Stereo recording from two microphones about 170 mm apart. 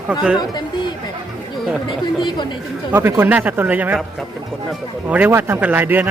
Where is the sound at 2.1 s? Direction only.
25° left (ahead or behind).